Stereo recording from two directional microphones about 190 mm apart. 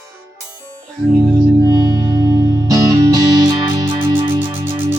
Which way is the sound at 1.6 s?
20° right (ahead or behind).